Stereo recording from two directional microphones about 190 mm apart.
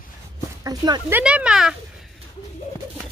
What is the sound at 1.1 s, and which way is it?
Speech, 5° right (ahead or behind).